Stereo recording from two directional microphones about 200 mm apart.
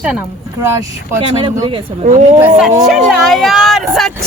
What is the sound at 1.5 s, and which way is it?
Speech, 25° right (ahead or behind).